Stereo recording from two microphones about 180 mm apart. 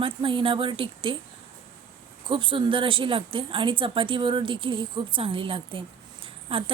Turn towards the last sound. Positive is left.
turn(degrees=-30)  # may be behind; listen again after turning